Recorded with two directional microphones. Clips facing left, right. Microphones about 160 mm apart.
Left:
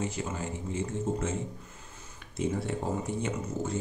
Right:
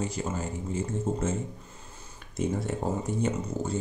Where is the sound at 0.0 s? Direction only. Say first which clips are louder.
Right 2 dB; 40° right (ahead or behind).